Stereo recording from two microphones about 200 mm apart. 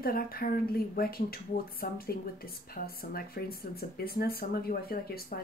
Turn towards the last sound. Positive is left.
turn(degrees=50)  # may be behind; listen again after turning